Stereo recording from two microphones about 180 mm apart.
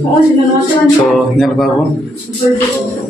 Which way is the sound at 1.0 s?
Centre (ahead or behind).